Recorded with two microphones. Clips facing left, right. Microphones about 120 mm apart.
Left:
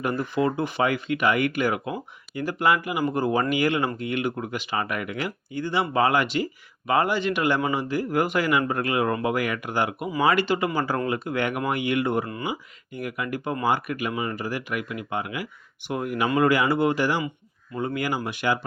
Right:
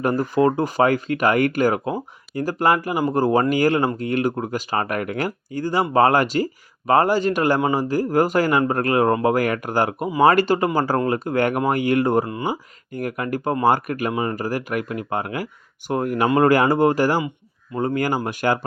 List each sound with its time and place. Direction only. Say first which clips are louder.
0.0 s speech: right 6 dB; 40° right (ahead or behind)